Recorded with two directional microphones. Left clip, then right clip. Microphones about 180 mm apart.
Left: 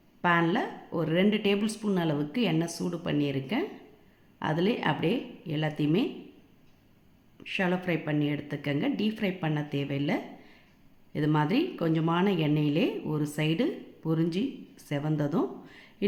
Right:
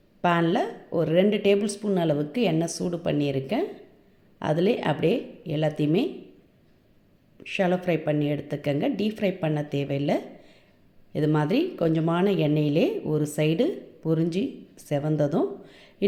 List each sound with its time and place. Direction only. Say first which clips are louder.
0.2 s speech: right 3 dB; 20° right (ahead or behind)
7.3 s speech: right 5 dB; 15° right (ahead or behind)